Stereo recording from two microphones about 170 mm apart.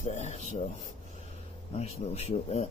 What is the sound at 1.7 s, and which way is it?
Speech, 40° left (ahead or behind).